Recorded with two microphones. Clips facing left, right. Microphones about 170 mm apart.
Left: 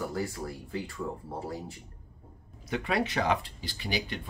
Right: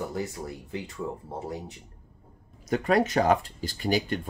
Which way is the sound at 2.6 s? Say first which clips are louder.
Right 6 dB; 45° right (ahead or behind).